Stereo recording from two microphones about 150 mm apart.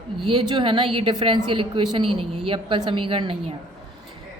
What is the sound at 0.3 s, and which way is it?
A woman's voice, 35° right (ahead or behind).